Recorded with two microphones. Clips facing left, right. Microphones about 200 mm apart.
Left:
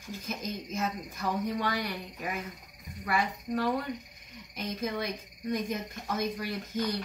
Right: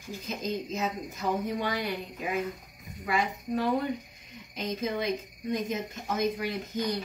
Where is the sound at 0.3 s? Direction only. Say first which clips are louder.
Right 4 dB; 20° right (ahead or behind).